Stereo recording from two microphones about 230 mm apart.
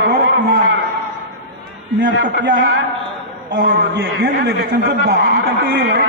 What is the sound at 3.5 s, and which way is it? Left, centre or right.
A man's voice, right.